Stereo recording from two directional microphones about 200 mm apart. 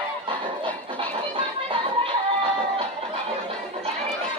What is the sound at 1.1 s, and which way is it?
Music, 25° right (ahead or behind).